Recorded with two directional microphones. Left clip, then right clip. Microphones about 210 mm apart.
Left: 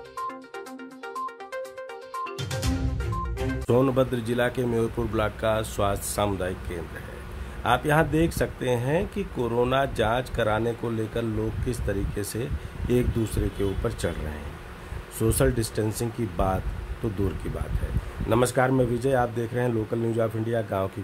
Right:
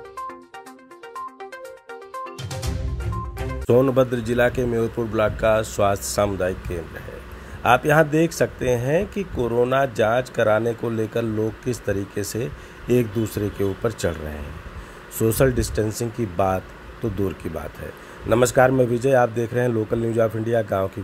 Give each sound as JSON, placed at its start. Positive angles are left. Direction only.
{"t": 1.1, "sound": "music", "side_deg": 0}
{"t": 3.0, "sound": "music", "side_deg": 0}
{"t": 3.6, "sound": "speech", "side_deg": -10}
{"t": 18.3, "sound": "speech", "side_deg": -10}